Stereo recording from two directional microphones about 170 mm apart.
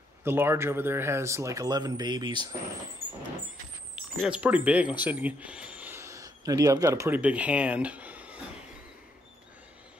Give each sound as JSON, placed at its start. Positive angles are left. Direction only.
{"t": 0.2, "sound": "speech", "side_deg": -15}
{"t": 3.9, "sound": "speech", "side_deg": -5}